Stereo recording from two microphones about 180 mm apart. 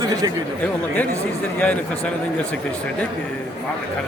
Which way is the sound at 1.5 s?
10° left (ahead or behind).